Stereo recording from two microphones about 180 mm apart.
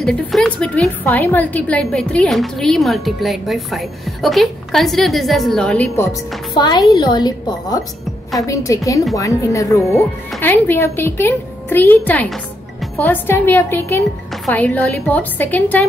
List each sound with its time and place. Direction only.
0.0 s a woman's voice: 5° left (ahead or behind)
6.5 s a woman's voice: 25° left (ahead or behind)